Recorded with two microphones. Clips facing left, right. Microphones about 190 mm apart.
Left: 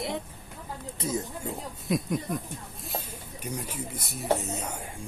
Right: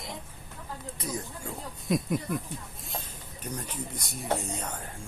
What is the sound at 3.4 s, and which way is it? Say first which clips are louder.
Speech: left 1 dB; 10° left (ahead or behind).